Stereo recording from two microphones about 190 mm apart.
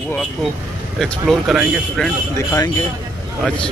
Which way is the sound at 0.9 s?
Centre (ahead or behind).